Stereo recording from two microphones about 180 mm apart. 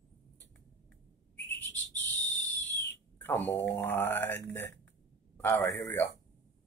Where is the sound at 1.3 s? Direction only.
10° left (ahead or behind).